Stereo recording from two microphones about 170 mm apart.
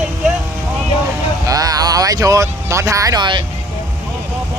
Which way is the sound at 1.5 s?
20° right (ahead or behind).